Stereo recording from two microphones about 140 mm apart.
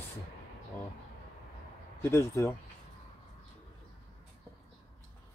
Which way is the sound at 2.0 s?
20° left (ahead or behind).